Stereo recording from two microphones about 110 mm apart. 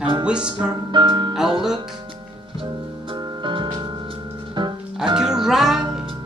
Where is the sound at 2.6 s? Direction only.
50° right (ahead or behind).